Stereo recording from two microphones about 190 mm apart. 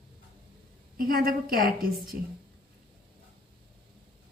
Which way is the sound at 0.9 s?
50° right (ahead or behind).